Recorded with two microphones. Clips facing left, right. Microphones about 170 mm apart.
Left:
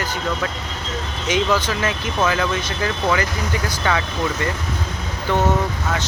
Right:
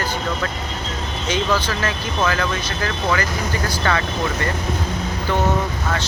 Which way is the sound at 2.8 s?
20° left (ahead or behind).